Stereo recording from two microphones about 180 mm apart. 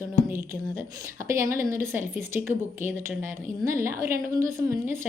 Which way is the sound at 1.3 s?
15° right (ahead or behind).